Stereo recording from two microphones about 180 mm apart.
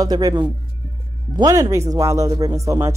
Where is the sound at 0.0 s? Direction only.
20° right (ahead or behind).